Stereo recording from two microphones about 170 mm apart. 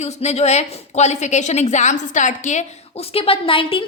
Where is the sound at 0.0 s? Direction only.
40° left (ahead or behind).